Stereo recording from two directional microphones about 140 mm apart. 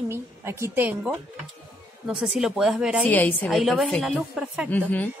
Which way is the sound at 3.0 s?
10° left (ahead or behind).